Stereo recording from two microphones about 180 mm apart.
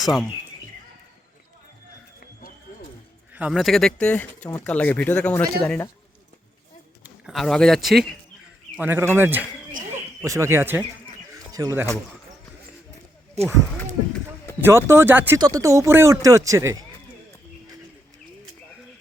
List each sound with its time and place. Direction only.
0.0 s speech: centre (ahead or behind)
3.3 s speech: 5° right (ahead or behind)
7.0 s a man's voice: centre (ahead or behind)
8.7 s speech: 10° right (ahead or behind)
11.3 s bird: 20° right (ahead or behind)
13.4 s speech: 35° right (ahead or behind)
14.6 s speech: 15° right (ahead or behind)